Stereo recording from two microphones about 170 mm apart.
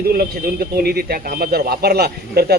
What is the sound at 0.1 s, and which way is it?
A man's voice, 60° right (ahead or behind).